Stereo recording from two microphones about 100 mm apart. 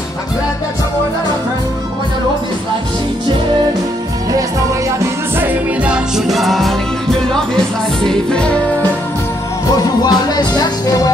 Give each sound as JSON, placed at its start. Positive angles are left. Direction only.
{"t": 4.9, "sound": "music", "side_deg": -20}
{"t": 6.1, "sound": "music", "side_deg": 0}
{"t": 10.0, "sound": "music", "side_deg": 40}